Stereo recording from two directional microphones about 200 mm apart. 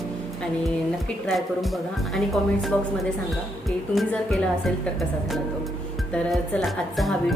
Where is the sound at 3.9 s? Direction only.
5° left (ahead or behind).